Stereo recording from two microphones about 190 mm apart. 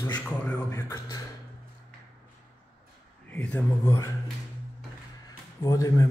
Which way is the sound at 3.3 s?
10° left (ahead or behind).